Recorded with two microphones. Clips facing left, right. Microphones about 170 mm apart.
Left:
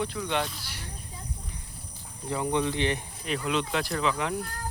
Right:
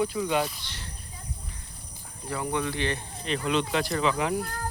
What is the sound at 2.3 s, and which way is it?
Speech, 20° left (ahead or behind).